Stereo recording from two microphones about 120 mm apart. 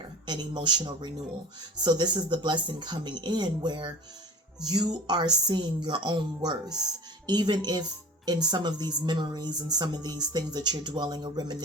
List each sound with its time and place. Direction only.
0.3 s speech: 40° right (ahead or behind)